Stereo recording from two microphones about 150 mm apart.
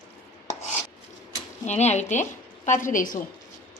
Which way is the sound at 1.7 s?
50° left (ahead or behind).